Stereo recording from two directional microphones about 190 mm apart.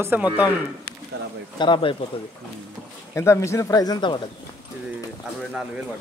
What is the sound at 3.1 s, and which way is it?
Speech, 15° left (ahead or behind).